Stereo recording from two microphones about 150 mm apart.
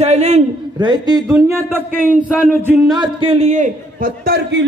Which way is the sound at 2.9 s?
30° right (ahead or behind).